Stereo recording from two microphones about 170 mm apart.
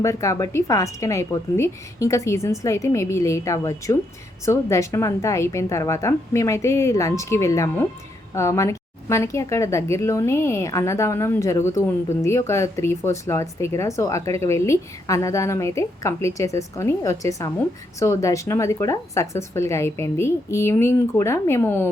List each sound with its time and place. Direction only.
0.0 s speech: 20° left (ahead or behind)